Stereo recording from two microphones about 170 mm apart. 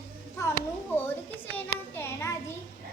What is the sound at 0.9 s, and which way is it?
A child's voice, 10° left (ahead or behind).